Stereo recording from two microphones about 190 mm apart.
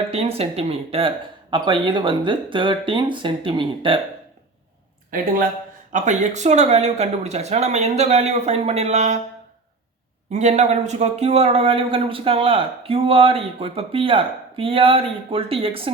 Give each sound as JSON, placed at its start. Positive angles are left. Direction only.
{"t": 0.1, "sound": "speech", "side_deg": -30}
{"t": 5.1, "sound": "speech", "side_deg": -50}
{"t": 10.3, "sound": "speech", "side_deg": -35}